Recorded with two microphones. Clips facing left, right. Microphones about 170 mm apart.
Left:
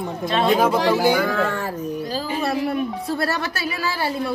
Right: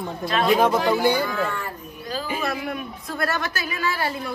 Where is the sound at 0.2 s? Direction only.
25° left (ahead or behind).